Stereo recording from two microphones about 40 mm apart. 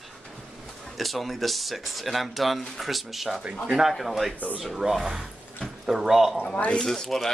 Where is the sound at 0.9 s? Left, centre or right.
Centre.